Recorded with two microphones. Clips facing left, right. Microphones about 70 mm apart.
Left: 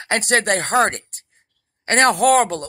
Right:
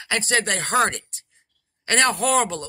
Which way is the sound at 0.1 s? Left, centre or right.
Left.